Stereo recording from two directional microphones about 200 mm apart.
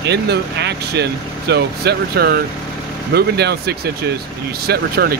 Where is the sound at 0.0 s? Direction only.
55° right (ahead or behind).